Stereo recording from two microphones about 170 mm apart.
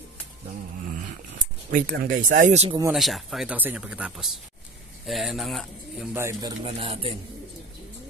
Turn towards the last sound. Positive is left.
turn(degrees=-35)  # may be behind; listen again after turning